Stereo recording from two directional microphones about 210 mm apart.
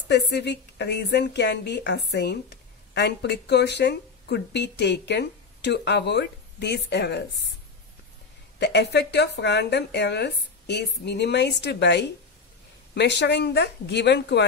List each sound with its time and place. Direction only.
0.1 s speech: 55° left (ahead or behind)
8.5 s speech: 55° left (ahead or behind)